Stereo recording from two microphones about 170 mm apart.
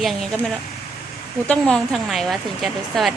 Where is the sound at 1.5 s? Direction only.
5° left (ahead or behind).